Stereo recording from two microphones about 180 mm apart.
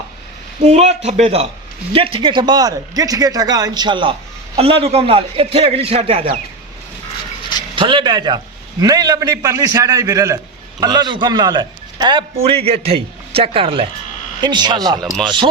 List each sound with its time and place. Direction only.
0.6 s a man's voice: 35° right (ahead or behind)
7.8 s a man's voice: 30° right (ahead or behind)
15.0 s speech: centre (ahead or behind)